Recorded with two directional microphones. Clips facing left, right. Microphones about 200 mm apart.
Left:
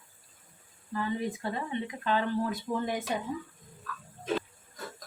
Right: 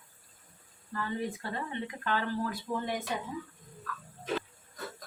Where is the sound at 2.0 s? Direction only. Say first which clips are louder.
Left 3 dB; 20° left (ahead or behind).